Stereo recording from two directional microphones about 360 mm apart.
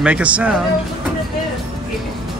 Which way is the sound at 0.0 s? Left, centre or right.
Centre.